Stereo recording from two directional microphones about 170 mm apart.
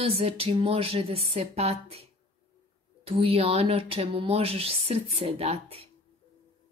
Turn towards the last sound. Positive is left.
turn(degrees=-35)  # may be behind; listen again after turning